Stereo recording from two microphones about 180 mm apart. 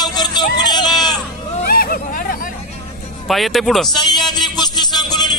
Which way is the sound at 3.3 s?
Centre (ahead or behind).